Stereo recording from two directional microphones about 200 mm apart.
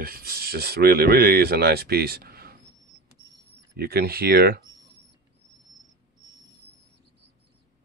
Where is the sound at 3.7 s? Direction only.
50° right (ahead or behind).